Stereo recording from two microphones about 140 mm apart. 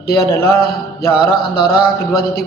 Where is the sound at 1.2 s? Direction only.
90° left.